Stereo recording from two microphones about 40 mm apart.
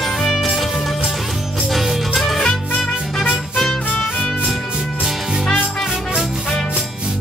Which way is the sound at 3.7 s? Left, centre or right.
Centre.